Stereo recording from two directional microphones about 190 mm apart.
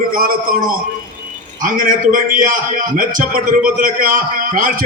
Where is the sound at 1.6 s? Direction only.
45° right (ahead or behind).